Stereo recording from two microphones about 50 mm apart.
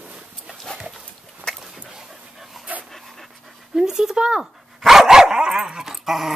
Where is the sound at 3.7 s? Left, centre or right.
Centre.